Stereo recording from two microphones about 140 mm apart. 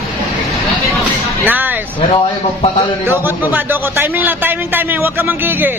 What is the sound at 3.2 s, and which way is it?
A man's voice, 15° right (ahead or behind).